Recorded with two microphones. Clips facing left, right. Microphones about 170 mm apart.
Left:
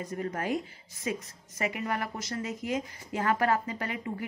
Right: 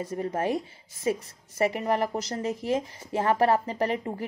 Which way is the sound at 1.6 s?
30° right (ahead or behind).